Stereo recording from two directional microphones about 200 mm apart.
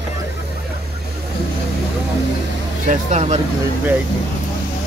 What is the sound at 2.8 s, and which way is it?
Speech, 35° right (ahead or behind).